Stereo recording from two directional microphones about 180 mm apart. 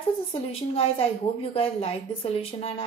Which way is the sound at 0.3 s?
30° left (ahead or behind).